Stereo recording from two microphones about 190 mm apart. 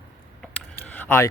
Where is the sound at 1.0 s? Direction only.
10° left (ahead or behind).